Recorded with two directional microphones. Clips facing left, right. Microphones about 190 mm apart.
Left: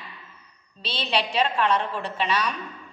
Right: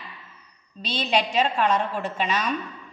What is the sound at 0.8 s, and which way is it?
A woman's voice, 45° right (ahead or behind).